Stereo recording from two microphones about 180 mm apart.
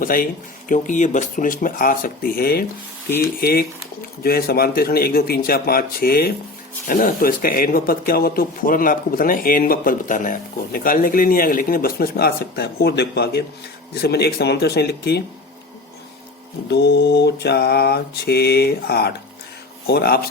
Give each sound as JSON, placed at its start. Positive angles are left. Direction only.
{"t": 0.0, "sound": "speech", "side_deg": 50}
{"t": 3.2, "sound": "mantra", "side_deg": 55}
{"t": 6.8, "sound": "speech", "side_deg": 50}
{"t": 13.9, "sound": "mantra", "side_deg": 60}
{"t": 16.6, "sound": "mantra", "side_deg": 65}